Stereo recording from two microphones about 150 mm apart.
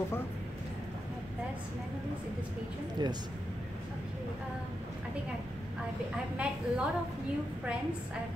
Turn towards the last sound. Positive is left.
turn(degrees=-5)  # may be behind; listen again after turning